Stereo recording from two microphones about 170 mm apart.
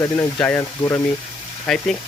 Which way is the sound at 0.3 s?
10° left (ahead or behind).